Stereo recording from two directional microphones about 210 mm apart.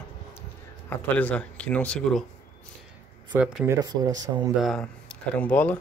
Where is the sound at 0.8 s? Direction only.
5° left (ahead or behind).